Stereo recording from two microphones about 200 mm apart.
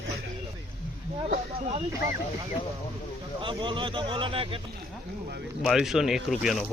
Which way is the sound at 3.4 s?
25° right (ahead or behind).